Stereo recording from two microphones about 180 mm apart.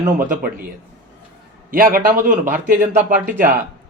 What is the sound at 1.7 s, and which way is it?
Speech, 50° right (ahead or behind).